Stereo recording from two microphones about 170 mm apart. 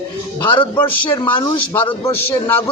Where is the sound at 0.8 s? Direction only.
10° left (ahead or behind).